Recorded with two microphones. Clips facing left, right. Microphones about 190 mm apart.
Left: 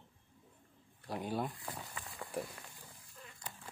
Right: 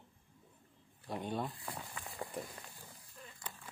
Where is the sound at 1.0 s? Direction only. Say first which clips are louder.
Left 1 dB; centre (ahead or behind).